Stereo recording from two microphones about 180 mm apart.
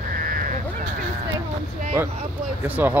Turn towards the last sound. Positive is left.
turn(degrees=-10)  # may be behind; listen again after turning